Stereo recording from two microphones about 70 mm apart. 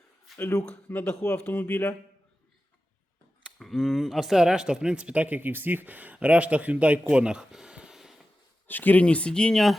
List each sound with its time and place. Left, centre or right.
0.3 s a sound: centre
0.9 s speech: left
3.6 s speech: centre
8.6 s speech: left; by 9.7 s centre